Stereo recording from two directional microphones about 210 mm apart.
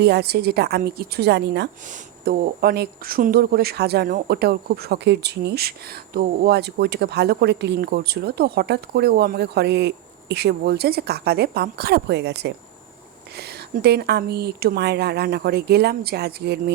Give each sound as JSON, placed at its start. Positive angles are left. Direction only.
{"t": 0.0, "sound": "speech", "side_deg": -50}